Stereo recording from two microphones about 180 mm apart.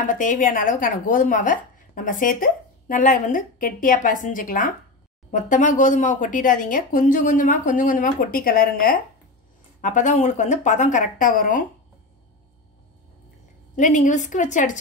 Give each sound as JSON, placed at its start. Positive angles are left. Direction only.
{"t": 0.1, "sound": "speech", "side_deg": 45}
{"t": 13.7, "sound": "speech", "side_deg": 45}